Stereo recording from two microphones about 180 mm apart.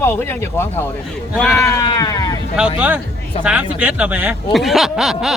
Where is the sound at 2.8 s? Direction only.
10° right (ahead or behind).